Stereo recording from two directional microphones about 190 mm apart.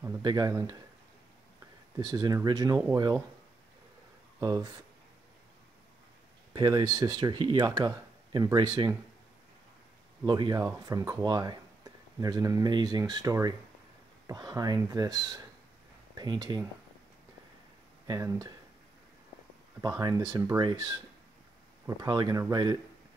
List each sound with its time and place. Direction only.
0.0 s speech: 15° right (ahead or behind)
2.0 s speech: 20° right (ahead or behind)
4.4 s speech: 15° right (ahead or behind)
6.5 s speech: 20° right (ahead or behind)
10.2 s speech: 20° right (ahead or behind)
18.0 s speech: 15° right (ahead or behind)
19.8 s speech: 20° right (ahead or behind)